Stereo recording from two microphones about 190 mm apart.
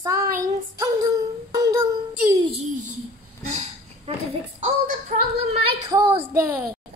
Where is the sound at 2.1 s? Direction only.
15° right (ahead or behind).